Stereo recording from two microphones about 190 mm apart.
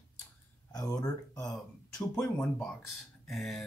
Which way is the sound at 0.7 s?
20° left (ahead or behind).